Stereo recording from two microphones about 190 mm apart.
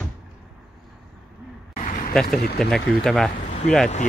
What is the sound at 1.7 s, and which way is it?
Vehicle, 45° left (ahead or behind).